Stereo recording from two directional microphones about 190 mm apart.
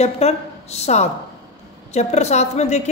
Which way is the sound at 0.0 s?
35° left (ahead or behind).